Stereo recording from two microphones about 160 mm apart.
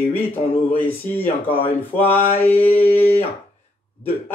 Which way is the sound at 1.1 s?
35° left (ahead or behind).